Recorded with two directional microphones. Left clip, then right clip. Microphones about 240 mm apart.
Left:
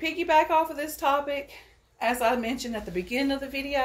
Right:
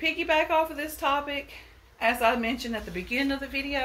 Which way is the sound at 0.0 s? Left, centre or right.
Centre.